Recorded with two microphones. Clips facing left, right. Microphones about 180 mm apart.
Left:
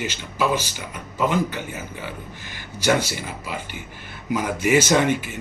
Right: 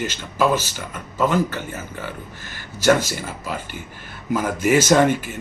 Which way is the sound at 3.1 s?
45° right (ahead or behind).